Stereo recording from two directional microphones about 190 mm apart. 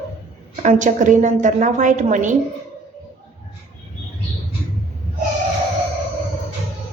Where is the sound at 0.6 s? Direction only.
40° right (ahead or behind).